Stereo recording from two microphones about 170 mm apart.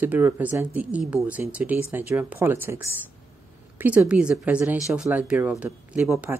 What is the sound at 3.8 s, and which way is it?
A woman's voice, 5° right (ahead or behind).